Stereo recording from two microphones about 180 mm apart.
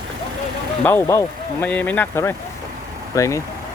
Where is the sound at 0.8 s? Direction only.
15° left (ahead or behind).